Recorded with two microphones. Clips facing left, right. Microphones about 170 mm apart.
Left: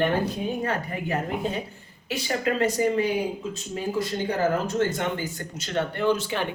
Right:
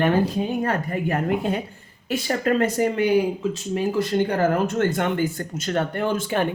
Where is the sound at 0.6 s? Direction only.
50° right (ahead or behind).